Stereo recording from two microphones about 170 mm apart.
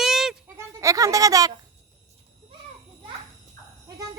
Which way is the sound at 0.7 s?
20° right (ahead or behind).